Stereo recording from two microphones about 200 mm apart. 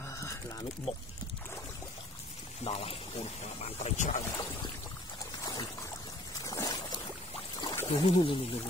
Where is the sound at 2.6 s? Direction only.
30° left (ahead or behind).